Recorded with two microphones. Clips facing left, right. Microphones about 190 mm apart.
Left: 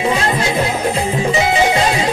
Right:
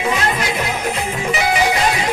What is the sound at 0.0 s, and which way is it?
Music, 25° left (ahead or behind).